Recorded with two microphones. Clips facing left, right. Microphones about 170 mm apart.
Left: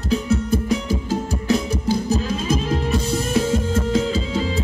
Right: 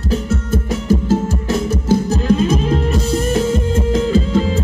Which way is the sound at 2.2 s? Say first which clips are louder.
Right 7 dB; 60° right (ahead or behind).